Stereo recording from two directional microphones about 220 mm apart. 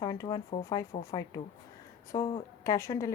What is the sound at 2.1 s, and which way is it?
A woman's voice, 15° left (ahead or behind).